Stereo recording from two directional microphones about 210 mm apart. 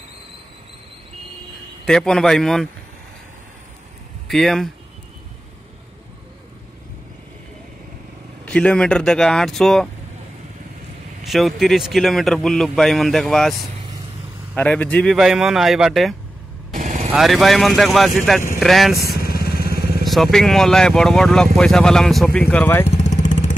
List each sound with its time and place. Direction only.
1.9 s speech: 5° left (ahead or behind)
4.3 s speech: centre (ahead or behind)
8.5 s speech: 5° left (ahead or behind)
11.2 s speech: centre (ahead or behind)
16.7 s vehicle: 35° right (ahead or behind)
17.1 s speech: centre (ahead or behind)
18.9 s vehicle: 50° left (ahead or behind)
20.1 s speech: centre (ahead or behind)
22.8 s vehicle: 35° left (ahead or behind)